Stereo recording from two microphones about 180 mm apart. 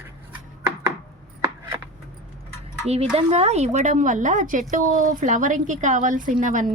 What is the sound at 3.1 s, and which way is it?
A woman's voice, 35° right (ahead or behind).